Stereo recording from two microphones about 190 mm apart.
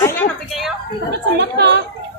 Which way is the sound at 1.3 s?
65° right (ahead or behind).